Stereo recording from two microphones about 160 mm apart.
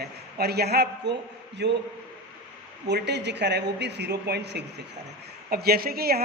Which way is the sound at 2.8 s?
90° right.